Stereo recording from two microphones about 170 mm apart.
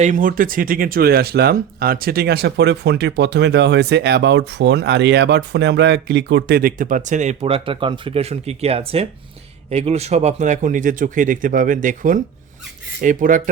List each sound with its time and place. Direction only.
0.0 s a man's voice: 50° right (ahead or behind)